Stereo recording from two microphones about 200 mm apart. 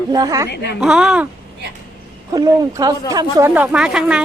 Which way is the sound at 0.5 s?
55° left (ahead or behind).